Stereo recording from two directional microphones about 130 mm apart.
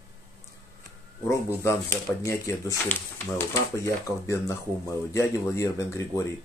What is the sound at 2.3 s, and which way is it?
Speech, 20° left (ahead or behind).